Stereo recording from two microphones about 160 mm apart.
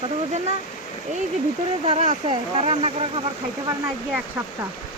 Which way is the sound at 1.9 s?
45° right (ahead or behind).